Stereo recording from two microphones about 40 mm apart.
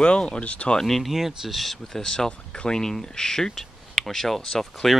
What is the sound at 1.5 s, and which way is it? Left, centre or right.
Speech, centre.